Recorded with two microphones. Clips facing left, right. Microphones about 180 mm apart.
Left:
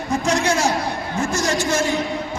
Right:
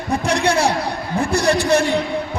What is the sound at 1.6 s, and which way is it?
Speech, 35° right (ahead or behind).